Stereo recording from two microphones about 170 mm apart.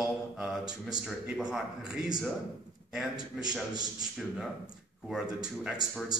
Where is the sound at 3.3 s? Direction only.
5° right (ahead or behind).